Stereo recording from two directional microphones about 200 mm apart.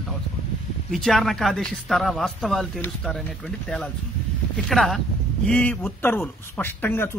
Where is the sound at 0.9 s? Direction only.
Centre (ahead or behind).